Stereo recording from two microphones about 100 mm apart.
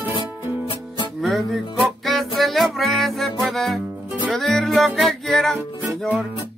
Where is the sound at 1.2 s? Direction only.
Centre (ahead or behind).